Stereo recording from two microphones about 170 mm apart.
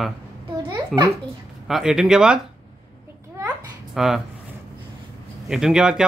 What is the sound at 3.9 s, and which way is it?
Speech, centre (ahead or behind).